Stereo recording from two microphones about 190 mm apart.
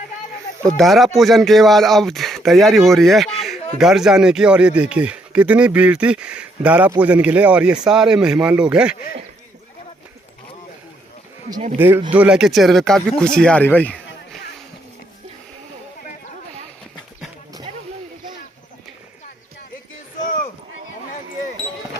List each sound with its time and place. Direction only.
0.6 s speech: centre (ahead or behind)
11.8 s speech: 10° right (ahead or behind); by 14.0 s 10° left (ahead or behind)